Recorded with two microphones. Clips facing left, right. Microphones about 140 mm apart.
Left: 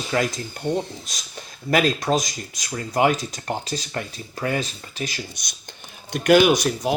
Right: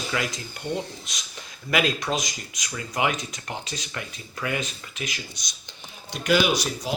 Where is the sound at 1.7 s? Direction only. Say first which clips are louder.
Left 5 dB; 40° left (ahead or behind).